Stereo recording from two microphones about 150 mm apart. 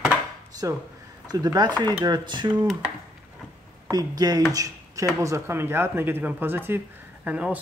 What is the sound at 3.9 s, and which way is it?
Speech, 25° right (ahead or behind).